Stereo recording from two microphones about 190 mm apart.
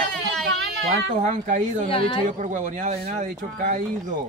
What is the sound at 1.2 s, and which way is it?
Speech, 45° right (ahead or behind).